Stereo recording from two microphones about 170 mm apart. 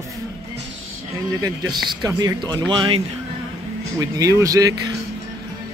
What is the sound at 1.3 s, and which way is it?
Speech, 25° right (ahead or behind).